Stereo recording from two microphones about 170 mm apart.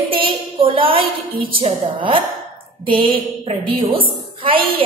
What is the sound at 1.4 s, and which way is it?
A woman's voice, 30° right (ahead or behind).